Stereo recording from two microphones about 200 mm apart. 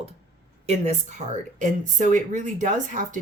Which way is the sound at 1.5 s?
40° right (ahead or behind).